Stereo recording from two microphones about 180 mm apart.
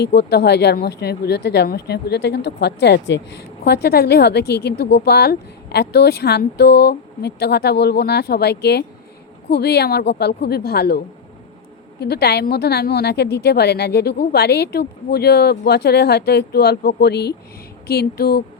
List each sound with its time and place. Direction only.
0.0 s a woman's voice: 70° left (ahead or behind)